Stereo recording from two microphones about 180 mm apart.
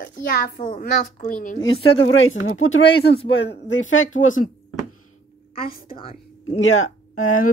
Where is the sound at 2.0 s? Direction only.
90° left; by 3.1 s 70° left (ahead or behind).